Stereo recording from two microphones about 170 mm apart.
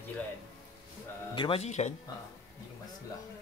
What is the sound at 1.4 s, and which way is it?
Speech, 35° left (ahead or behind).